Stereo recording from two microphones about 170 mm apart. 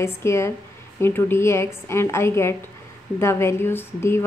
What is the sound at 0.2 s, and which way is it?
A woman's voice, 15° left (ahead or behind).